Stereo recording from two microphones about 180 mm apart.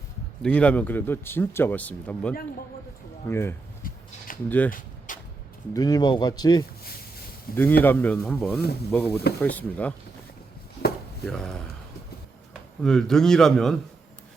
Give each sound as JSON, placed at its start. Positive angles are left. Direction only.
{"t": 0.4, "sound": "a man's voice", "side_deg": 5}
{"t": 5.1, "sound": "a sound", "side_deg": 45}
{"t": 5.7, "sound": "speech", "side_deg": 20}
{"t": 7.5, "sound": "a man's voice", "side_deg": 10}
{"t": 11.3, "sound": "a man's voice", "side_deg": 5}
{"t": 12.8, "sound": "a man's voice", "side_deg": 5}